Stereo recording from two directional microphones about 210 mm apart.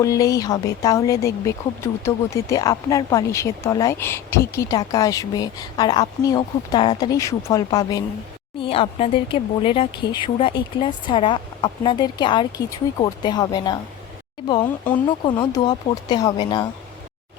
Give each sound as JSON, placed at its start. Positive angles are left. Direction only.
{"t": 0.0, "sound": "speech", "side_deg": 15}